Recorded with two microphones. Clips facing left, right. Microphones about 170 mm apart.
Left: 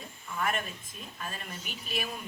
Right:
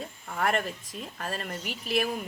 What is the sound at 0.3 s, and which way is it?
Speech, 75° right (ahead or behind).